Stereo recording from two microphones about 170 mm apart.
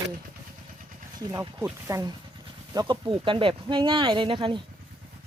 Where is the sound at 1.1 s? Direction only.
20° right (ahead or behind).